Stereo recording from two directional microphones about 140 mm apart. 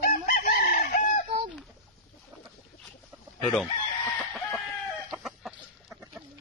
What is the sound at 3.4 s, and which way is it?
Chicken, centre (ahead or behind).